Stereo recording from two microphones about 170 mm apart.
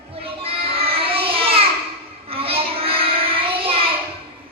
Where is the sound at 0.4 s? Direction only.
35° right (ahead or behind).